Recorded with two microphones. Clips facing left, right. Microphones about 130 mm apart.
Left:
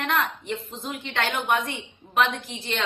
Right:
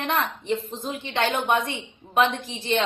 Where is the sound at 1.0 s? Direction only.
20° right (ahead or behind).